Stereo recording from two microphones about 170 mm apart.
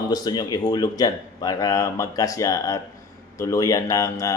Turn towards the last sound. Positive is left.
turn(degrees=20)  # may be behind; listen again after turning